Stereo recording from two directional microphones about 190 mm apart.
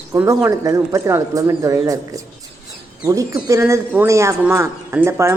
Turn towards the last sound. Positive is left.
turn(degrees=-15)  # may be behind; listen again after turning